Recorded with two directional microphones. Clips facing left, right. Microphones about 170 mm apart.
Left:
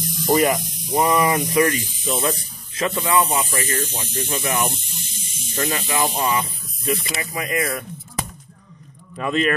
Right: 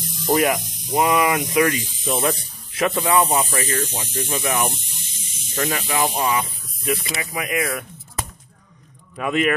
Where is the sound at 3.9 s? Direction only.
10° right (ahead or behind).